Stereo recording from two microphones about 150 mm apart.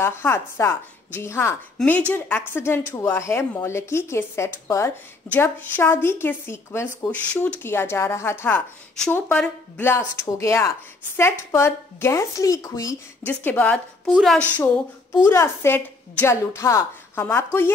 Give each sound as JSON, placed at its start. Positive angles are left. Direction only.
{"t": 0.0, "sound": "a woman's voice", "side_deg": 15}
{"t": 15.2, "sound": "speech", "side_deg": 15}